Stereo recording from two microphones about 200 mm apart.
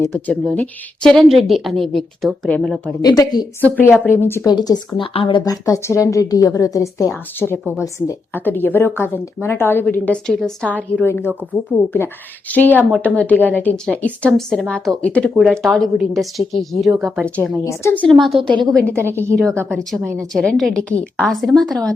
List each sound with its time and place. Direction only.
0.0 s a woman's voice: 10° left (ahead or behind)
3.0 s a woman's voice: 20° left (ahead or behind); by 17.3 s centre (ahead or behind)
17.7 s a woman's voice: 10° left (ahead or behind)
18.9 s a woman's voice: 10° right (ahead or behind)
19.6 s a woman's voice: centre (ahead or behind)